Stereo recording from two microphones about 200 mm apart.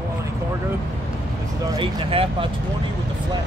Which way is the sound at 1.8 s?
25° right (ahead or behind).